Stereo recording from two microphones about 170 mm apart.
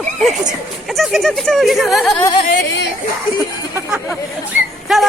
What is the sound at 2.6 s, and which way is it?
Speech, 90° left.